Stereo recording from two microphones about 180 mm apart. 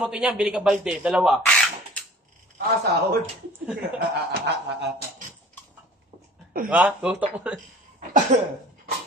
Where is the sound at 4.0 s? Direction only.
70° right (ahead or behind).